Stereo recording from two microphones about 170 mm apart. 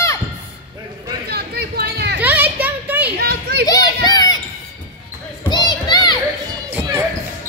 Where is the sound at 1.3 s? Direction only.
70° right (ahead or behind).